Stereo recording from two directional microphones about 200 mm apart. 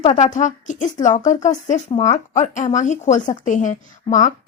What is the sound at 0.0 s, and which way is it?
A woman's voice, 35° left (ahead or behind).